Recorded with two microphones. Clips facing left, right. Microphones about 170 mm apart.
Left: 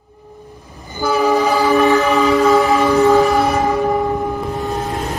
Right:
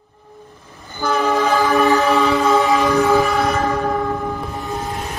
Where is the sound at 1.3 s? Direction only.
15° left (ahead or behind).